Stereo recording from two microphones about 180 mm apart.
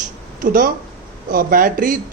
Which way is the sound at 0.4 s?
50° right (ahead or behind).